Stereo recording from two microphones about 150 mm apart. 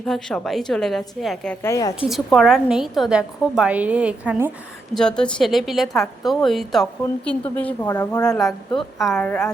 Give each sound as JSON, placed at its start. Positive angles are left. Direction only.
{"t": 0.0, "sound": "a woman's voice", "side_deg": 5}
{"t": 1.6, "sound": "speech", "side_deg": 20}
{"t": 2.0, "sound": "a woman's voice", "side_deg": 0}
{"t": 4.9, "sound": "a woman's voice", "side_deg": 5}
{"t": 8.2, "sound": "a woman's voice", "side_deg": 5}